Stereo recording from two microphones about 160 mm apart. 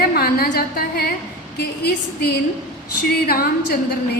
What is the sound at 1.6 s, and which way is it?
Speech, 85° left.